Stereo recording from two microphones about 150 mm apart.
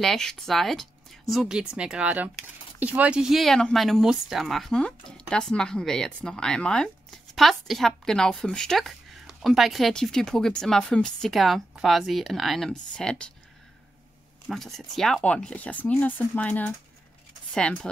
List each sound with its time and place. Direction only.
0.0 s speech: 5° left (ahead or behind)
14.5 s speech: centre (ahead or behind)